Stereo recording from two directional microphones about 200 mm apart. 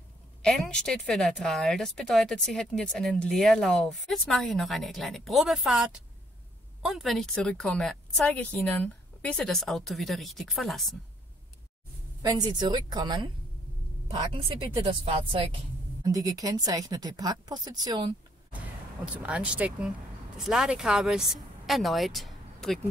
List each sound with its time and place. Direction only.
0.4 s speech: 5° left (ahead or behind)
12.2 s a woman's voice: 20° right (ahead or behind)
19.2 s speech: 5° right (ahead or behind)